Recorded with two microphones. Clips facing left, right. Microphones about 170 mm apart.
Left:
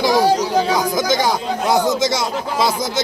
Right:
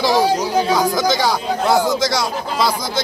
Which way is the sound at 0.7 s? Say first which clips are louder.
Right 1 dB; 15° left (ahead or behind).